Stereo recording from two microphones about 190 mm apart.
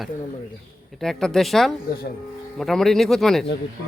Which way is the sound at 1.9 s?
55° left (ahead or behind).